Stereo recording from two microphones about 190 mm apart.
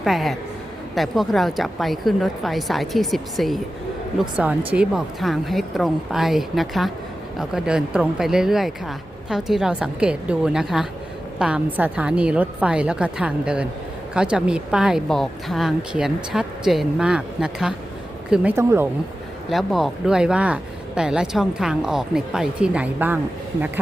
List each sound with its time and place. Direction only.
0.0 s speech: centre (ahead or behind)
19.5 s speech: centre (ahead or behind)